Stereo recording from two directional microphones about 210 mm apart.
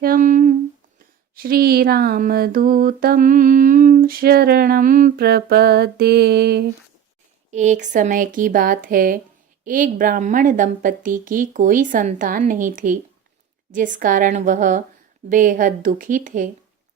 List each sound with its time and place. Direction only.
0.0 s humming: 40° right (ahead or behind)
1.4 s a sound: 45° right (ahead or behind)
7.5 s a woman's voice: 35° right (ahead or behind)